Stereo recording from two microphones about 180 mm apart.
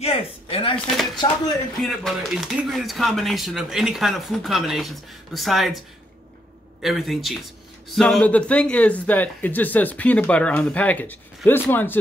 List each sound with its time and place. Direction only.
0.0 s speech: 30° left (ahead or behind)
0.7 s speech: centre (ahead or behind)
6.8 s speech: centre (ahead or behind)